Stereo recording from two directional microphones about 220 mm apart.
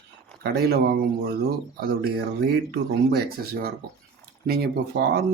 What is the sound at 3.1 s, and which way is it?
Speech, 45° right (ahead or behind).